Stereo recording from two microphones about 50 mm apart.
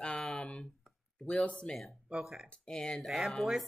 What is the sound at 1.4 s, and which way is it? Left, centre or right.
Speech, left.